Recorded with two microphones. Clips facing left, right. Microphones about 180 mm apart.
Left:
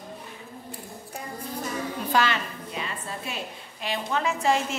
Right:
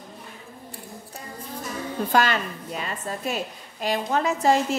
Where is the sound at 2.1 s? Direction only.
45° right (ahead or behind).